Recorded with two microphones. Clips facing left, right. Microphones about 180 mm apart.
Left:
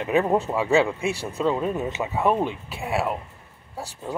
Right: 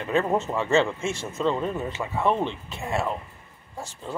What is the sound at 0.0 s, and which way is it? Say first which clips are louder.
Speech: left 3 dB; 15° left (ahead or behind).